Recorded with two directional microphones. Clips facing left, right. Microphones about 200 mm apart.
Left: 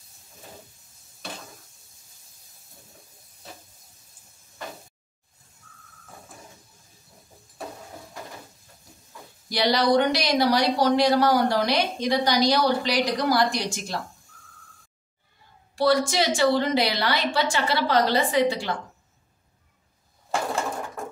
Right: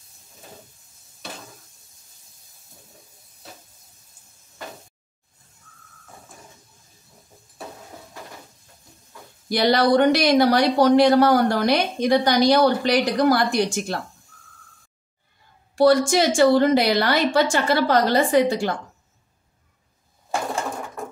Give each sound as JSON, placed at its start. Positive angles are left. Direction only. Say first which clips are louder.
{"t": 9.5, "sound": "speech", "louder": "right 3 dB", "side_deg": -55}
{"t": 15.7, "sound": "speech", "louder": "right 5 dB", "side_deg": -45}